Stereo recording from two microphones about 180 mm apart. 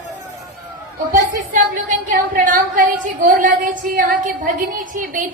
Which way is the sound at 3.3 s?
45° right (ahead or behind).